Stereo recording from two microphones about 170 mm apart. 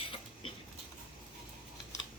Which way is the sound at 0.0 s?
35° left (ahead or behind).